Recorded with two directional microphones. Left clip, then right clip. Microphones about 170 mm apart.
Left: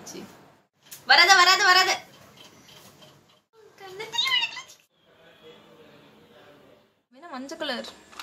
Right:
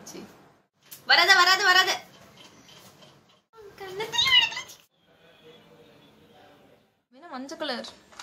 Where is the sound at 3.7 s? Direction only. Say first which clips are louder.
Right 2 dB; centre (ahead or behind).